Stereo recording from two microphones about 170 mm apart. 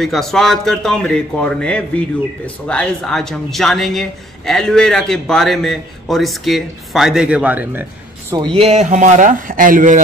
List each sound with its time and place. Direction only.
0.0 s speech: centre (ahead or behind)
8.4 s speech: 30° right (ahead or behind); by 10.0 s 50° right (ahead or behind)